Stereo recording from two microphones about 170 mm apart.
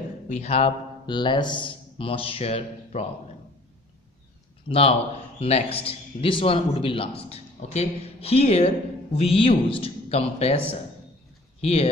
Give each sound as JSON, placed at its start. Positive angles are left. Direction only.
{"t": 0.3, "sound": "a man's voice", "side_deg": 40}
{"t": 4.6, "sound": "a man's voice", "side_deg": 35}
{"t": 11.6, "sound": "a man's voice", "side_deg": 35}